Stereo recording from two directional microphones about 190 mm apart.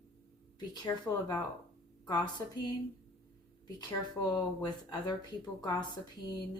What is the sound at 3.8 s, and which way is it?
Speech, 20° left (ahead or behind).